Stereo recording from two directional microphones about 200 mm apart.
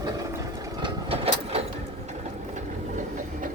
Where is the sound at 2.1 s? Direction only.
35° right (ahead or behind).